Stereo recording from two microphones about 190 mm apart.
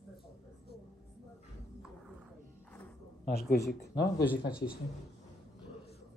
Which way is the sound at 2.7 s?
10° left (ahead or behind).